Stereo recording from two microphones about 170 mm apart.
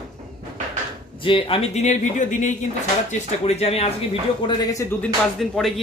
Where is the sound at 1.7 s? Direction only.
45° left (ahead or behind).